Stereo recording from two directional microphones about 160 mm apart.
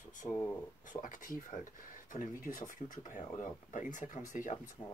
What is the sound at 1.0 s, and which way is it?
Speech, 55° left (ahead or behind).